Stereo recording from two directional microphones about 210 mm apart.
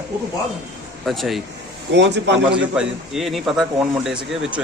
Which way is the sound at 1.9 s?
55° right (ahead or behind).